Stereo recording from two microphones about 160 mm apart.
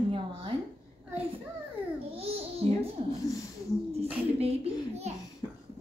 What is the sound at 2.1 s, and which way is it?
Babbling, 40° right (ahead or behind).